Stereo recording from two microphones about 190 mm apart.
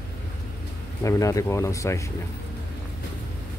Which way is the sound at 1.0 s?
15° left (ahead or behind).